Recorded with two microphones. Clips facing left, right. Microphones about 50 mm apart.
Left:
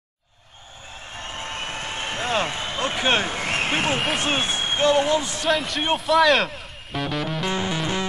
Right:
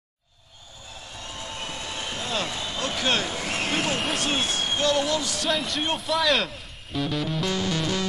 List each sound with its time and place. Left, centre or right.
1.1 s vehicle: left
4.2 s speech: left
5.5 s speech: centre
7.4 s music: left